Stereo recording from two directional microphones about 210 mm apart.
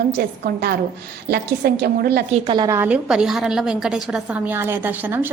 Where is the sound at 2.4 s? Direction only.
20° right (ahead or behind).